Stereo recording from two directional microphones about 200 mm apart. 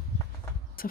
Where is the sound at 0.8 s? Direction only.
45° left (ahead or behind).